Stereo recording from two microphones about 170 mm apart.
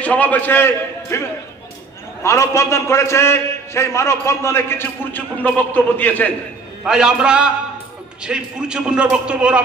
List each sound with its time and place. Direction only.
0.0 s a man's voice: 10° left (ahead or behind)
2.2 s a man's voice: 15° left (ahead or behind)
6.8 s a man's voice: 5° right (ahead or behind)